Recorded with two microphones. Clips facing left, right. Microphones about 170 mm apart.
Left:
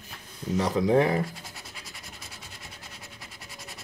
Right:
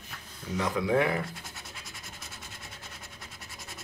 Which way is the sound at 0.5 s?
35° left (ahead or behind).